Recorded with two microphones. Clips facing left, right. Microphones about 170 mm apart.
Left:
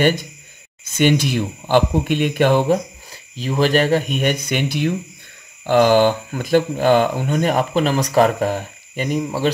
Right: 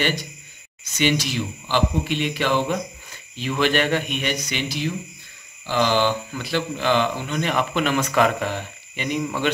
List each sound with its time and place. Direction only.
0.0 s speech: 50° left (ahead or behind)